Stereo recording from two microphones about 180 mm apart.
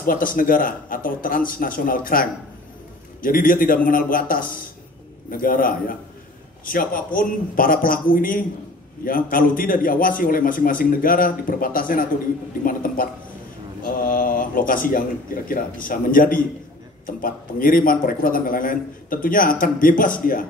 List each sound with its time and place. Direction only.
0.0 s a man's voice: 50° left (ahead or behind)